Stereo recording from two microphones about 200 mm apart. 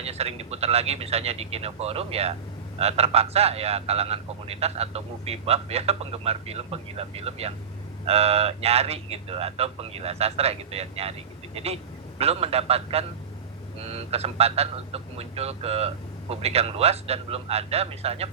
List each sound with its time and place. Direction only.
0.0 s a man's voice: 30° right (ahead or behind)